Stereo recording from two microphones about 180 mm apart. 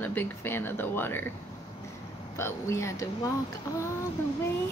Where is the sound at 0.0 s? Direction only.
10° left (ahead or behind).